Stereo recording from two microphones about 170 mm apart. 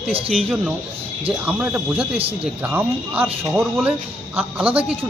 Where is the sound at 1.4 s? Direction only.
10° right (ahead or behind).